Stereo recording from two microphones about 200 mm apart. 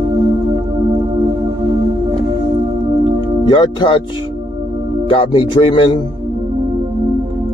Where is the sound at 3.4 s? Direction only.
25° left (ahead or behind).